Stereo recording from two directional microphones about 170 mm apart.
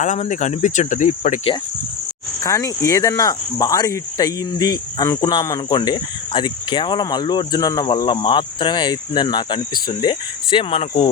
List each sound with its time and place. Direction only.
0.0 s speech: 45° left (ahead or behind)
2.4 s cricket: 20° left (ahead or behind); by 11.1 s 35° left (ahead or behind)